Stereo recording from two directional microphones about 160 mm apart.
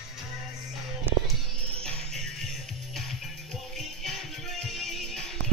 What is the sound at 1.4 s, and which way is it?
Music, 5° left (ahead or behind).